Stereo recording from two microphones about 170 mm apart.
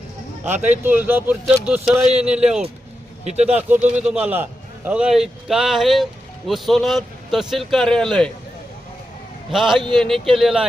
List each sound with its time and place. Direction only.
0.4 s speech: 45° right (ahead or behind)
0.9 s a man's voice: 10° right (ahead or behind)
3.2 s a man's voice: 40° right (ahead or behind)
3.6 s a man's voice: 10° right (ahead or behind)
9.5 s a man's voice: centre (ahead or behind)